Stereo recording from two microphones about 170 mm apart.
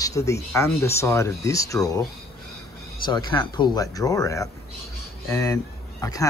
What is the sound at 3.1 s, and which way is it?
Speech, 25° left (ahead or behind).